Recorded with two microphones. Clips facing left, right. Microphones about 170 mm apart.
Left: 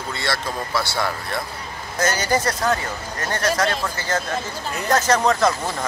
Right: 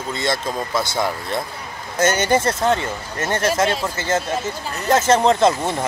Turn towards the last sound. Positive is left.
turn(degrees=-25)  # may be behind; listen again after turning